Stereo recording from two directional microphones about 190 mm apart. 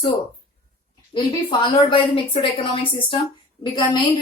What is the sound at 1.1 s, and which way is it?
A woman's voice, 25° left (ahead or behind).